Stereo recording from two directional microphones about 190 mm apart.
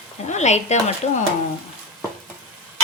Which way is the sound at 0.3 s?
35° left (ahead or behind).